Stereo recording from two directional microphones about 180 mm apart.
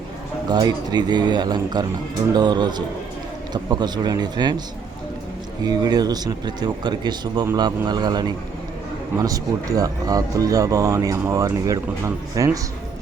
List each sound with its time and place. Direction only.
0.5 s speech: 20° right (ahead or behind)
5.6 s speech: 20° right (ahead or behind)